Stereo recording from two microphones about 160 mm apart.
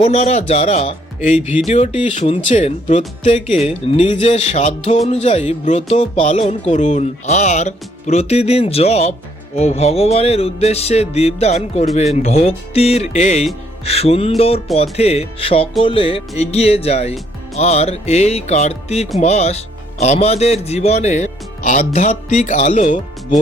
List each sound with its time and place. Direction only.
0.0 s speech: 45° left (ahead or behind)